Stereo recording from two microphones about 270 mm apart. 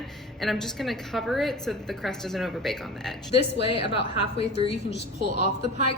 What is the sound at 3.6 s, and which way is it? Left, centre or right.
A woman's voice, left.